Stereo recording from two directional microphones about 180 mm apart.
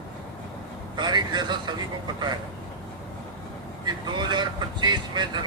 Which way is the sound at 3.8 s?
25° right (ahead or behind).